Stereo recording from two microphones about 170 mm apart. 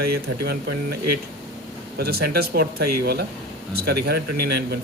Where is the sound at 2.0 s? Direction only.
65° right (ahead or behind).